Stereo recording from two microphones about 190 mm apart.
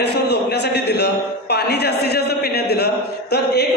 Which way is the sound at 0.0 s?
60° left (ahead or behind).